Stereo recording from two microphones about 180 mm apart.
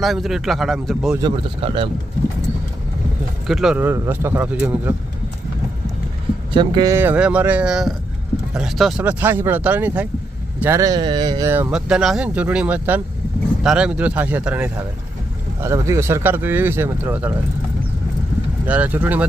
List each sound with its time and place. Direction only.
0.0 s a man's voice: centre (ahead or behind)
1.2 s speech: 30° right (ahead or behind)
3.4 s speech: centre (ahead or behind)
6.5 s speech: 25° right (ahead or behind)
18.6 s speech: 10° right (ahead or behind)